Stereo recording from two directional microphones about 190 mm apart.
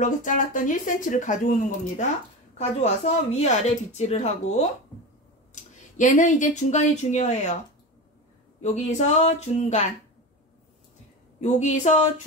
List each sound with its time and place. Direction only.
0.0 s speech: 45° left (ahead or behind)
8.5 s speech: 35° left (ahead or behind)
11.4 s speech: 40° left (ahead or behind)